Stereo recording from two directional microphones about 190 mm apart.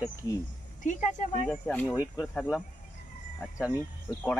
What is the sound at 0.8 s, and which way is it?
Speech, 40° left (ahead or behind).